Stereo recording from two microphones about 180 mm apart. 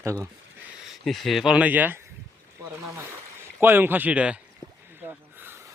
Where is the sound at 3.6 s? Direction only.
10° right (ahead or behind).